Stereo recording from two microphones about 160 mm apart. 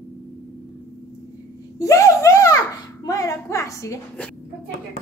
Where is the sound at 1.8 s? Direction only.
20° left (ahead or behind).